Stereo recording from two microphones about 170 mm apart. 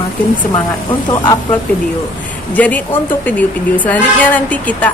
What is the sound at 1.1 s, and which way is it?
Speech, 25° left (ahead or behind).